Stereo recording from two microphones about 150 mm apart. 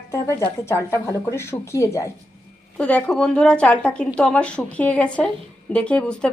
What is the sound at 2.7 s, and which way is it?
A woman's voice, 10° left (ahead or behind).